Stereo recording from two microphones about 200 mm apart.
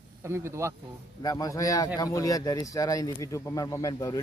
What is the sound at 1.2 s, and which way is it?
Speech, 20° left (ahead or behind).